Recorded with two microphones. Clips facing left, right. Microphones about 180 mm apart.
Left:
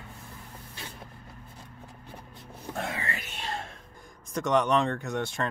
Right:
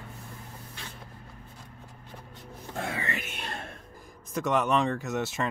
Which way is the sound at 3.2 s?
55° right (ahead or behind).